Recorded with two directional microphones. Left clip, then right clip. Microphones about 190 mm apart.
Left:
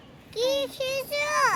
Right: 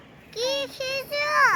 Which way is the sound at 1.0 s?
30° left (ahead or behind).